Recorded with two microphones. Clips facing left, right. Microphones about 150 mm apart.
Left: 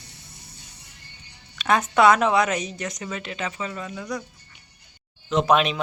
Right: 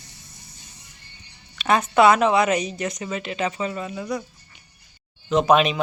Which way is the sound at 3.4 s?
20° right (ahead or behind).